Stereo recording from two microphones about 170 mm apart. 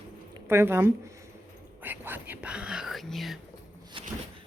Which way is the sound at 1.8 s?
10° right (ahead or behind).